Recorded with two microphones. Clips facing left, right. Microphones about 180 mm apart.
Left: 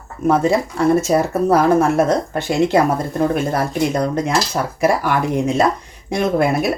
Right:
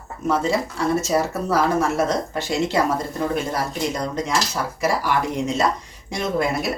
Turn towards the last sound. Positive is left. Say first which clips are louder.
# left 6 dB
turn(degrees=60)  # may be behind; listen again after turning